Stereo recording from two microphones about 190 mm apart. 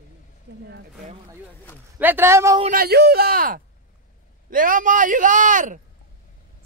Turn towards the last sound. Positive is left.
turn(degrees=-45)  # may be behind; listen again after turning